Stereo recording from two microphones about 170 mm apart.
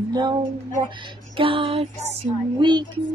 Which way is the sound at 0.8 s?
30° right (ahead or behind).